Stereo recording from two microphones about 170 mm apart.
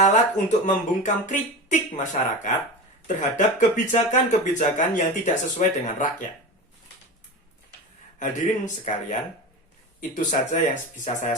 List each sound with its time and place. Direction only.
0.0 s speech: 45° left (ahead or behind)
8.2 s speech: 45° left (ahead or behind)